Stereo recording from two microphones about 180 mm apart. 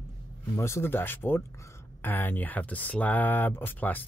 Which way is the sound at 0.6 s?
15° left (ahead or behind).